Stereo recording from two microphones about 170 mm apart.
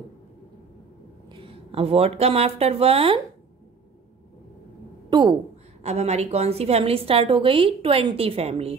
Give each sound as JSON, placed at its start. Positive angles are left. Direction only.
{"t": 1.3, "sound": "speech", "side_deg": -35}
{"t": 5.1, "sound": "speech", "side_deg": -25}
{"t": 5.8, "sound": "a woman's voice", "side_deg": -40}